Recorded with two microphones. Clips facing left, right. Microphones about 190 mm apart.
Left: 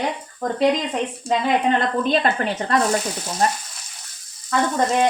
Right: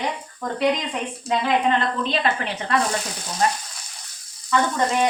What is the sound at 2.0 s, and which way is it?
Speech, 45° left (ahead or behind).